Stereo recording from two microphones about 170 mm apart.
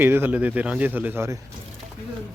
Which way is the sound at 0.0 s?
10° right (ahead or behind).